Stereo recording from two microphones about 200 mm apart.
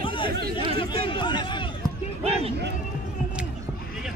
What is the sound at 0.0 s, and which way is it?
Chatter, 25° left (ahead or behind).